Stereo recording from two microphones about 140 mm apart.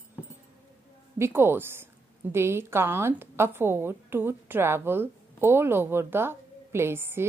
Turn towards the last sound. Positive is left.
turn(degrees=-15)  # may be behind; listen again after turning